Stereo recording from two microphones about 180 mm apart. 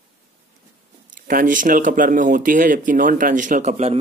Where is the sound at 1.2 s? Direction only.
50° right (ahead or behind).